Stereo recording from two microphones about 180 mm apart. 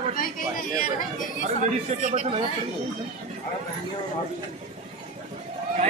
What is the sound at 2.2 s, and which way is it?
Speech, 35° right (ahead or behind).